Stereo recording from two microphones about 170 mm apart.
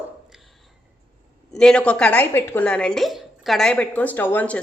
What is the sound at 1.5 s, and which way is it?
A woman's voice, 5° left (ahead or behind).